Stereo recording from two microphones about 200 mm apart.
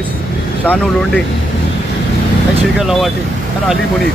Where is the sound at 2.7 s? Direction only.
Centre (ahead or behind).